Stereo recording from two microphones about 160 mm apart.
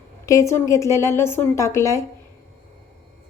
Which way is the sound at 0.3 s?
20° left (ahead or behind).